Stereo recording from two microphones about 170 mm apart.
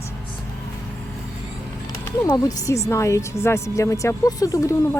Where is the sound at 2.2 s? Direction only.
20° left (ahead or behind).